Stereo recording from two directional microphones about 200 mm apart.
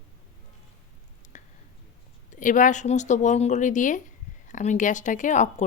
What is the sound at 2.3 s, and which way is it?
Speech, 40° left (ahead or behind).